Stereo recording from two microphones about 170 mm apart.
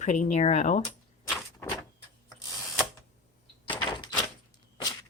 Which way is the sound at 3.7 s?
25° left (ahead or behind).